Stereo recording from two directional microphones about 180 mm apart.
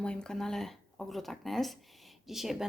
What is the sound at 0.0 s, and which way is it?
Speech, 5° left (ahead or behind).